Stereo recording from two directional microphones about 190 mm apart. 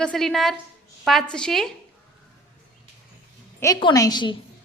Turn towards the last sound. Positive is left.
turn(degrees=25)  # may be behind; listen again after turning